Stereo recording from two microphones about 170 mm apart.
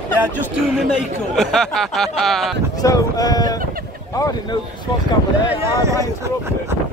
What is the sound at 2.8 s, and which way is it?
Speech, 20° left (ahead or behind).